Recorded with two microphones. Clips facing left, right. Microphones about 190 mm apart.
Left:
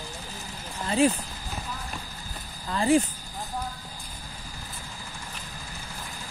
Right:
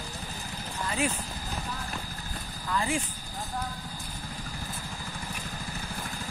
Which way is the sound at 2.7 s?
35° left (ahead or behind).